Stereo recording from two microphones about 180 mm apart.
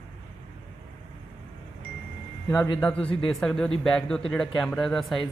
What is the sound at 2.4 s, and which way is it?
Speech, 20° left (ahead or behind).